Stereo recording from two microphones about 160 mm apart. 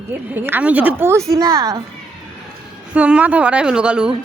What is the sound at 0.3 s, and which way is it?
A woman's voice, 10° right (ahead or behind).